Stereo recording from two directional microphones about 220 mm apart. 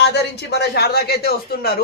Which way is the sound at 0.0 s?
50° left (ahead or behind).